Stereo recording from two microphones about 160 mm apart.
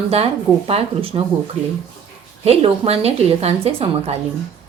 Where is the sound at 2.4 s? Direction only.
40° right (ahead or behind).